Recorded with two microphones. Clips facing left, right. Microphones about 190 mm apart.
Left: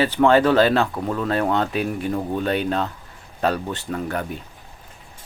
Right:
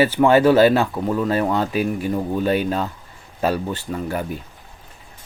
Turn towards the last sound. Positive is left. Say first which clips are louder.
# right 1 dB
turn(degrees=-5)  # may be behind; listen again after turning